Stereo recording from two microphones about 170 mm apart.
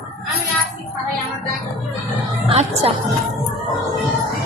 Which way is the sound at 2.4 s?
35° right (ahead or behind).